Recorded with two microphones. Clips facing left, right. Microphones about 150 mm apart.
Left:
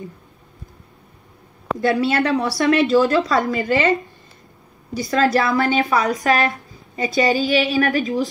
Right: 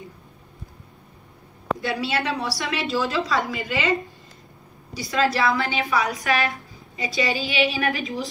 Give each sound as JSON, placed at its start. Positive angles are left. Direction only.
{"t": 1.8, "sound": "a woman's voice", "side_deg": 45}
{"t": 5.1, "sound": "a woman's voice", "side_deg": 45}